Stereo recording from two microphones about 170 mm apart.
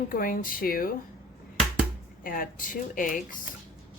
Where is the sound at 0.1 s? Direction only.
55° left (ahead or behind).